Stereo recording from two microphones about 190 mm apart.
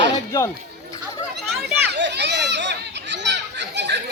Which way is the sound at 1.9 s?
65° right (ahead or behind).